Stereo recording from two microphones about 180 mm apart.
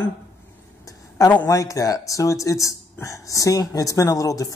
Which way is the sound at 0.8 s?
20° left (ahead or behind).